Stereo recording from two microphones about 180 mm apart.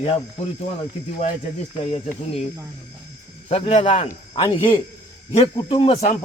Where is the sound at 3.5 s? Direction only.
30° left (ahead or behind).